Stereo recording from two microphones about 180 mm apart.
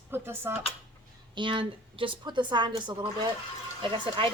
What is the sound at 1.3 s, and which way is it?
A woman's voice, 25° right (ahead or behind).